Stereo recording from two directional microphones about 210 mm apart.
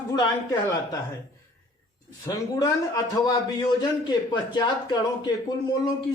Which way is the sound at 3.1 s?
20° left (ahead or behind).